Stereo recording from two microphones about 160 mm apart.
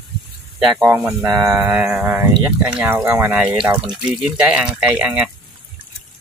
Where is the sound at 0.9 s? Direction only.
15° right (ahead or behind).